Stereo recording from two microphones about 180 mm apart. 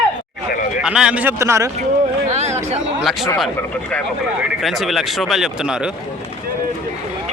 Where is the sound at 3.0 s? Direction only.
Centre (ahead or behind).